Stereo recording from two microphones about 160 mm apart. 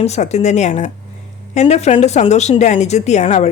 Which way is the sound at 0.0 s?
45° left (ahead or behind).